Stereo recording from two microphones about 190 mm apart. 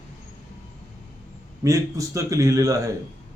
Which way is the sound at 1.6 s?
15° right (ahead or behind).